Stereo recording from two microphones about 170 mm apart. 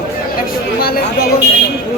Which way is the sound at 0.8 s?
60° left (ahead or behind).